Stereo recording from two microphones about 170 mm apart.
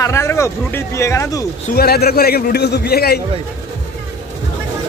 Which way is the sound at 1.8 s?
65° left (ahead or behind).